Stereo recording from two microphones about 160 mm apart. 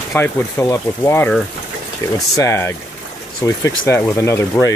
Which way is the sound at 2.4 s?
15° left (ahead or behind).